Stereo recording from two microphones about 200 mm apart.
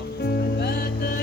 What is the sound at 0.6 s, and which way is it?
Music, 50° left (ahead or behind).